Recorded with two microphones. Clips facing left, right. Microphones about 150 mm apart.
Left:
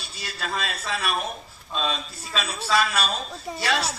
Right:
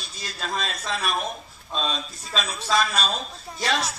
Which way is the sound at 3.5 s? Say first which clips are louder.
Left 6 dB; 90° left.